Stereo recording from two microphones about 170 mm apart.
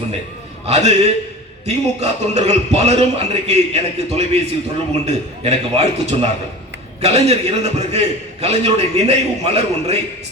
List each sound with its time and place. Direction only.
0.6 s a man's voice: 40° right (ahead or behind)